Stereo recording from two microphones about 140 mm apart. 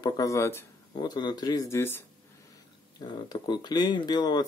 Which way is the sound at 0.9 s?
30° left (ahead or behind).